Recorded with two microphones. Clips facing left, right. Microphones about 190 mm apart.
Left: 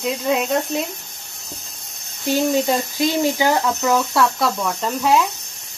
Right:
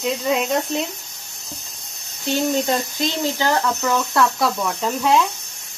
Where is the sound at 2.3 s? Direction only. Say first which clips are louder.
Left 2 dB; 5° left (ahead or behind).